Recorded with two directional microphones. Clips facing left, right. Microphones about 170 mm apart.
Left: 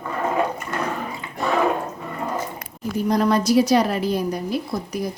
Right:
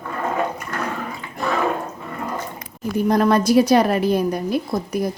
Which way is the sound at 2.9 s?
55° right (ahead or behind).